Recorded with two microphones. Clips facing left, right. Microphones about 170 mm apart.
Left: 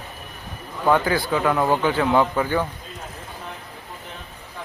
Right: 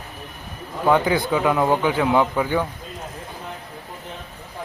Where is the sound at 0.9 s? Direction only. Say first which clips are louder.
Right 1 dB; 15° right (ahead or behind).